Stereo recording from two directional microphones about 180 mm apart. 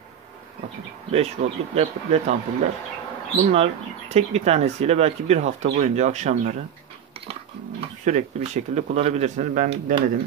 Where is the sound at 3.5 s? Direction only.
35° right (ahead or behind).